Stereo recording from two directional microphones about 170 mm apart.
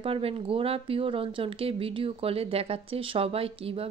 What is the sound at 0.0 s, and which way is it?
Speech, 35° right (ahead or behind).